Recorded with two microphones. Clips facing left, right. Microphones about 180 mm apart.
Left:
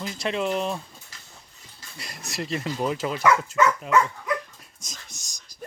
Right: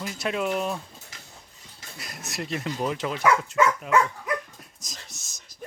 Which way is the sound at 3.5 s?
10° right (ahead or behind).